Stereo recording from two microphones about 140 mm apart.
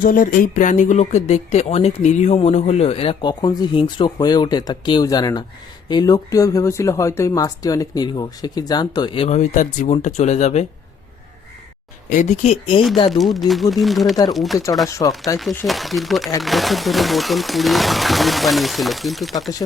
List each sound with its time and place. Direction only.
0.0 s speech: 75° left (ahead or behind); by 9.4 s 40° left (ahead or behind)
9.4 s speech: 60° left (ahead or behind)
12.0 s speech: 60° left (ahead or behind); by 12.8 s 45° left (ahead or behind)
13.1 s speech: centre (ahead or behind)
14.8 s speech: 25° left (ahead or behind)
15.6 s speech: centre (ahead or behind)